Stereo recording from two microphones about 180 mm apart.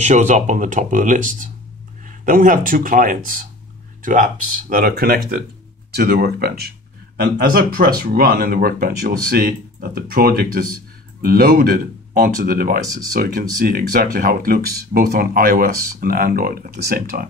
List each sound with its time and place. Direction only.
0.0 s speech: 40° right (ahead or behind)